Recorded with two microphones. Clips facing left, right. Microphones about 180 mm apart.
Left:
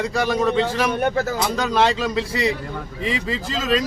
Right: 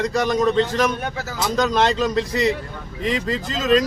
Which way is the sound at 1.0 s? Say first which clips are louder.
Left 8 dB; 55° left (ahead or behind).